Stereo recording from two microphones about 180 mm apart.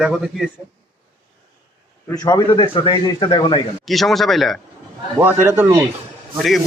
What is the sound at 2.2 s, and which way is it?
Speech, 25° left (ahead or behind).